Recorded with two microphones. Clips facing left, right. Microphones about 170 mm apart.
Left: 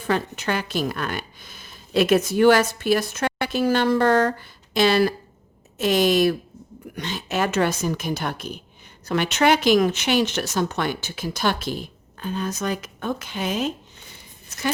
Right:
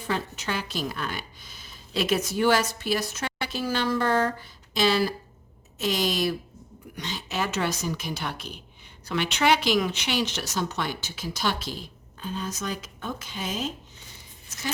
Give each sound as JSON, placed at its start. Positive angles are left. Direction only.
{"t": 0.1, "sound": "a woman's voice", "side_deg": 60}